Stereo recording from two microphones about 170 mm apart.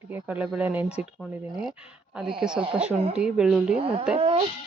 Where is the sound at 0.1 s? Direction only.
10° right (ahead or behind).